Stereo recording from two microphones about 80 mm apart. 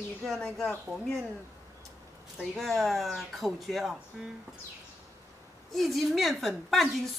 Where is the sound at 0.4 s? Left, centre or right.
Centre.